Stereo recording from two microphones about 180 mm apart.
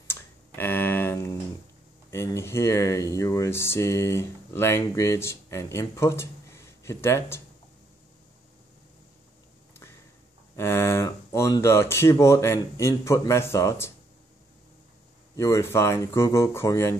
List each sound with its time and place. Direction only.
0.0 s a sound: 10° left (ahead or behind)
2.0 s speech: 15° left (ahead or behind)
10.5 s speech: 15° left (ahead or behind)
15.3 s speech: 15° left (ahead or behind)